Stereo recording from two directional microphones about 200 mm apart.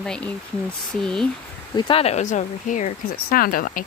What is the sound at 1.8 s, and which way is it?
Speech, 25° left (ahead or behind).